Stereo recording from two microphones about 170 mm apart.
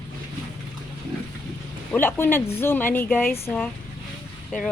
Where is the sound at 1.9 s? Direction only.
10° left (ahead or behind).